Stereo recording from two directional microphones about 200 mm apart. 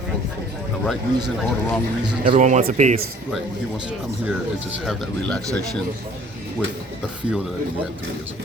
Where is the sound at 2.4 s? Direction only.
40° right (ahead or behind).